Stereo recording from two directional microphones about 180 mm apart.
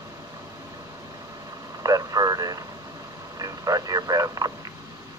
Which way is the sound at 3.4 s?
20° right (ahead or behind).